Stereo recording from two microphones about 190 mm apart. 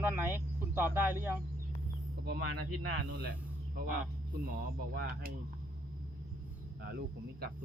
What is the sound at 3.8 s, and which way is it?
Speech, 50° right (ahead or behind).